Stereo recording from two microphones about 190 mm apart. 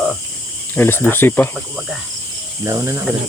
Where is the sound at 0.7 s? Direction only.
10° left (ahead or behind).